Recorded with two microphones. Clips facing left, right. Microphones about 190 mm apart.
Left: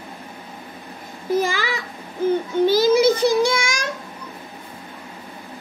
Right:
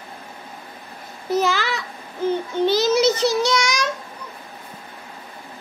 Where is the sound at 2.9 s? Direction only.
50° left (ahead or behind).